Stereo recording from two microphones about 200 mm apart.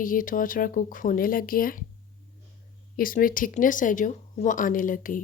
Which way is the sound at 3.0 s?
45° left (ahead or behind).